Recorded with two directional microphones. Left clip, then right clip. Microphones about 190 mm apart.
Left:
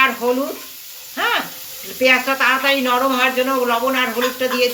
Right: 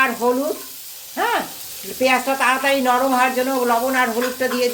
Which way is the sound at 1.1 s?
50° right (ahead or behind).